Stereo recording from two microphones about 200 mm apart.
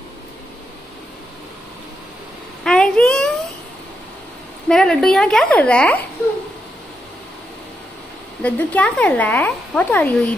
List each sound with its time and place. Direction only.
2.6 s a sound: 5° left (ahead or behind)
4.6 s a woman's voice: 5° left (ahead or behind)
8.4 s speech: 5° left (ahead or behind)